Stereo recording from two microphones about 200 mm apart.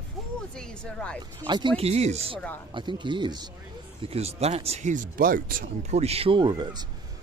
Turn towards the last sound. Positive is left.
turn(degrees=-20)  # may be behind; listen again after turning